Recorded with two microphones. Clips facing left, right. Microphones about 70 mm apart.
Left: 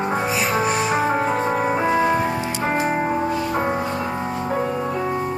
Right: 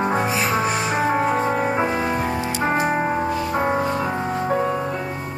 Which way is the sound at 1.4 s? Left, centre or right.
Centre.